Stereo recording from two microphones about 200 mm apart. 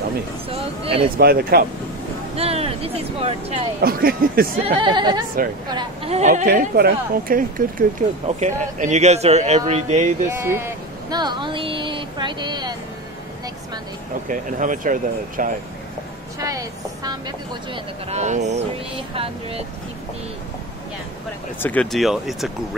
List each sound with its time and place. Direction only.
0.5 s speech: 30° right (ahead or behind)
1.1 s speech: 50° right (ahead or behind)
2.3 s speech: 30° right (ahead or behind)
3.8 s speech: 50° right (ahead or behind)
4.6 s a woman's voice: 25° right (ahead or behind)
10.4 s a sound: 15° right (ahead or behind)
14.2 s a woman's voice: 40° right (ahead or behind)
16.3 s speech: 15° right (ahead or behind)
18.1 s a woman's voice: 35° right (ahead or behind)
21.5 s speech: 10° left (ahead or behind)